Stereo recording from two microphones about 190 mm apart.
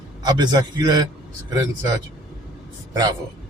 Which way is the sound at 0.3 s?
20° right (ahead or behind).